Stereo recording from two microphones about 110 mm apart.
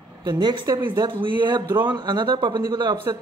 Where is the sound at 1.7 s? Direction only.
20° right (ahead or behind).